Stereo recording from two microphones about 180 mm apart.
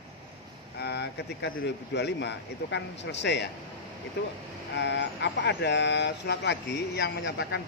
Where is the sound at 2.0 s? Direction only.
75° left (ahead or behind).